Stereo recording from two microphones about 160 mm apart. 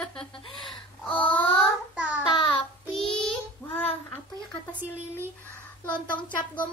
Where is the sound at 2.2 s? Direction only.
30° left (ahead or behind).